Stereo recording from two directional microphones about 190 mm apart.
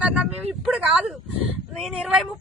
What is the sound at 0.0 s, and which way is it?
Speech, 5° right (ahead or behind).